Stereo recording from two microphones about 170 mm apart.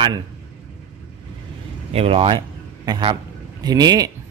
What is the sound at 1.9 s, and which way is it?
A man's voice, 35° right (ahead or behind).